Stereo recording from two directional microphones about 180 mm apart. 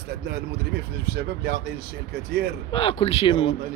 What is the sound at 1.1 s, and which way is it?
Speech, 65° right (ahead or behind).